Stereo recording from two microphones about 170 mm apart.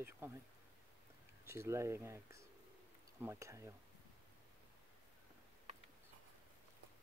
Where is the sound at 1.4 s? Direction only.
15° right (ahead or behind).